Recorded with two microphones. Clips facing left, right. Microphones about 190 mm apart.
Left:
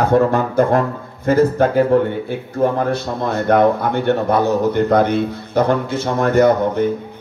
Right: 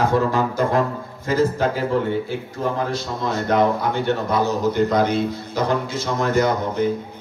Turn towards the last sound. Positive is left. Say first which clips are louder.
# left 6 dB
turn(degrees=55)  # may be behind; listen again after turning